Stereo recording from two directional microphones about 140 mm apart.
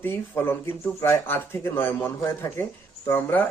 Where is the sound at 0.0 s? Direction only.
15° left (ahead or behind).